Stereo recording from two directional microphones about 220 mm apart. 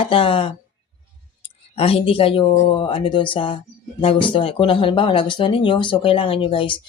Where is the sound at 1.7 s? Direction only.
25° left (ahead or behind).